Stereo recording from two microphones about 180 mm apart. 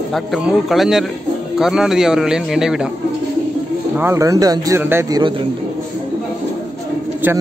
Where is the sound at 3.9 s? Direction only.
15° right (ahead or behind).